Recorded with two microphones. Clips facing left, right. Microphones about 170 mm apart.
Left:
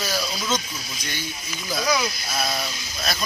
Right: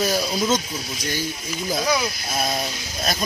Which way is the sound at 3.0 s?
40° right (ahead or behind).